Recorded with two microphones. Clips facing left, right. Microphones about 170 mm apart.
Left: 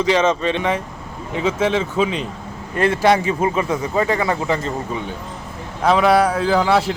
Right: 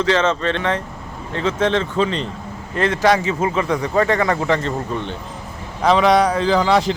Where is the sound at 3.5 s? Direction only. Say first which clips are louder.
Right 1 dB; 20° left (ahead or behind).